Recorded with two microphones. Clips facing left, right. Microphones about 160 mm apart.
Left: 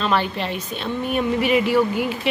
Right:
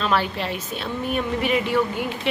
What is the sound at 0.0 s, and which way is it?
A woman's voice, 5° right (ahead or behind).